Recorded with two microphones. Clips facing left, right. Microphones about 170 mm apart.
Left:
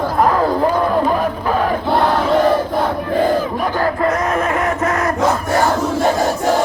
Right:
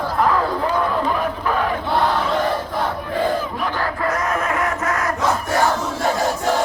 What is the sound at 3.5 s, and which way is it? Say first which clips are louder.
Battle cry: left 6 dB; 40° left (ahead or behind).